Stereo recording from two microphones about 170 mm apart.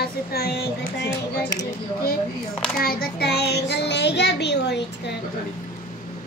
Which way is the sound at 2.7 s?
60° left (ahead or behind).